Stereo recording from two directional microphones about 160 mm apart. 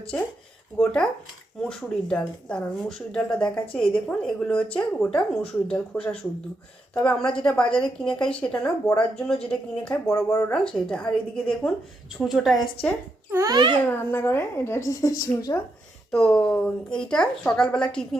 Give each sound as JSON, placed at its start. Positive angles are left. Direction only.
{"t": 0.1, "sound": "a woman's voice", "side_deg": 5}
{"t": 13.3, "sound": "a child's voice", "side_deg": -20}
{"t": 13.9, "sound": "a woman's voice", "side_deg": 15}
{"t": 16.1, "sound": "a woman's voice", "side_deg": 5}